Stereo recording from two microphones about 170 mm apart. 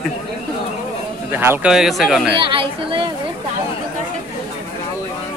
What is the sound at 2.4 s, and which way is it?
Speech, 30° right (ahead or behind).